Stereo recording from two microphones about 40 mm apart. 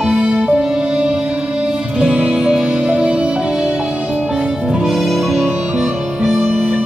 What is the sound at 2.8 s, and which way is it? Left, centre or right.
Music, right.